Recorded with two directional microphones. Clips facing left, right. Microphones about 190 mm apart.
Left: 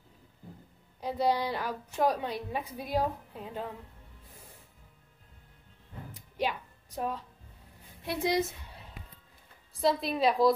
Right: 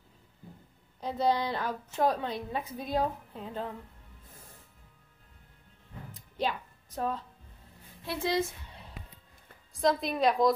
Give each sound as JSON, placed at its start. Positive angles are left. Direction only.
{"t": 1.0, "sound": "a woman's voice", "side_deg": 10}
{"t": 6.1, "sound": "music", "side_deg": 15}
{"t": 8.0, "sound": "a woman's voice", "side_deg": 20}
{"t": 9.8, "sound": "a woman's voice", "side_deg": 0}